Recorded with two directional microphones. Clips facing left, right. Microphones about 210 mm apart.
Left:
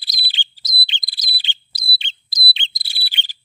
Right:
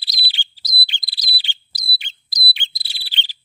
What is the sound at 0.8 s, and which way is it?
Chirp, 20° left (ahead or behind).